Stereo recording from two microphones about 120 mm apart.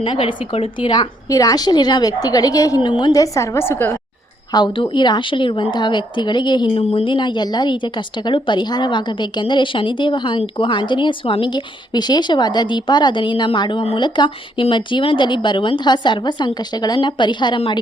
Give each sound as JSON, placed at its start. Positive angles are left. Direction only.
{"t": 0.0, "sound": "speech", "side_deg": 45}
{"t": 0.9, "sound": "a woman's voice", "side_deg": 30}
{"t": 4.5, "sound": "a woman's voice", "side_deg": 40}